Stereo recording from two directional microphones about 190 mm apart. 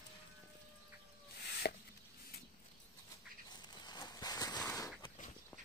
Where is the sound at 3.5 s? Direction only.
20° left (ahead or behind).